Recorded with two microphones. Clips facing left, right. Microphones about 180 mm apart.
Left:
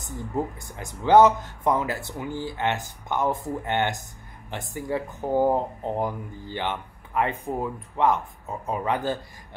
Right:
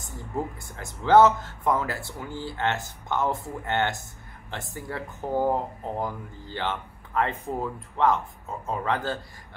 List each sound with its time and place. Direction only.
0.6 s speech: 15° left (ahead or behind)